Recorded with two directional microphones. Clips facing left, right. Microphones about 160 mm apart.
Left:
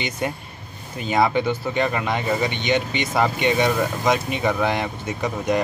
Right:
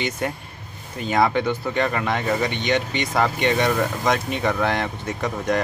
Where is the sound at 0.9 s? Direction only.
Centre (ahead or behind).